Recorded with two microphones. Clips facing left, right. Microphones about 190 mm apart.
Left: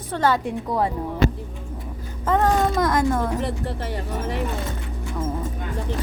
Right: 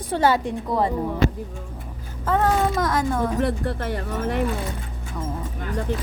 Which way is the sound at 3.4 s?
55° right (ahead or behind).